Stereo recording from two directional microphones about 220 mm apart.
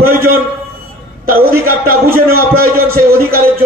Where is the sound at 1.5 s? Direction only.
40° right (ahead or behind).